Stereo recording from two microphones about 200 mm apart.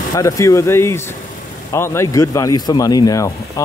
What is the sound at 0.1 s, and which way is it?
Speech, 15° left (ahead or behind).